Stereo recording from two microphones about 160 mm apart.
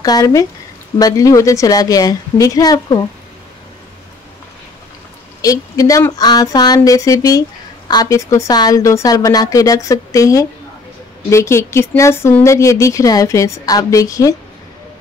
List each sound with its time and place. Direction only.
0.0 s speech: 25° left (ahead or behind)
5.4 s speech: 20° left (ahead or behind)